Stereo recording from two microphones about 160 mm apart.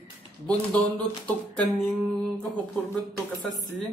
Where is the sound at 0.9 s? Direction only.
10° left (ahead or behind).